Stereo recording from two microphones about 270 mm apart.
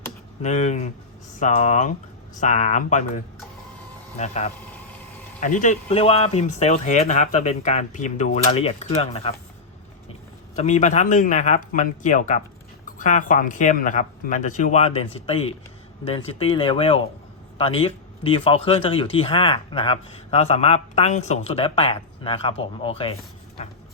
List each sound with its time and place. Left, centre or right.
0.4 s speech: left
4.2 s speech: left